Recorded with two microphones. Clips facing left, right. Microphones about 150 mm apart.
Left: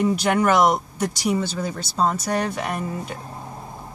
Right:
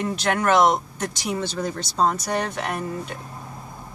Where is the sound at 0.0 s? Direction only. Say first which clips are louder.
Left 4 dB; 10° left (ahead or behind).